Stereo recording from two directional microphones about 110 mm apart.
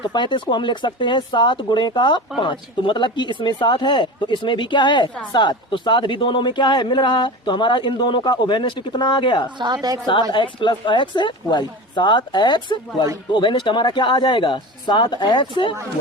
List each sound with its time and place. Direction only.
0.0 s speech: 45° left (ahead or behind)
9.6 s a woman's voice: 40° right (ahead or behind)
10.3 s speech: 45° left (ahead or behind)